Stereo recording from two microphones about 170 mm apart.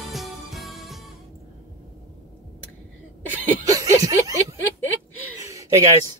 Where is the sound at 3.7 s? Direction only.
20° right (ahead or behind).